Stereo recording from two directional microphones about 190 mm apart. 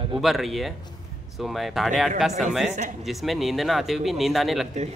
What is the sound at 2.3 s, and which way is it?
Speech, 40° right (ahead or behind).